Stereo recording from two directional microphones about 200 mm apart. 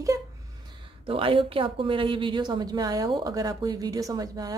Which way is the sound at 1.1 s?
25° right (ahead or behind).